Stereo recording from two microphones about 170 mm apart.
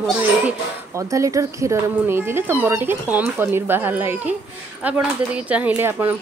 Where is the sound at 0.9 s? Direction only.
20° right (ahead or behind).